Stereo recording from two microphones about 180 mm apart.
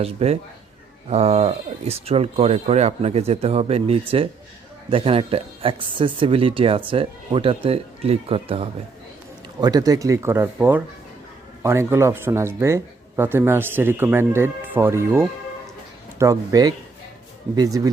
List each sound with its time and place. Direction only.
0.0 s speech: 35° right (ahead or behind)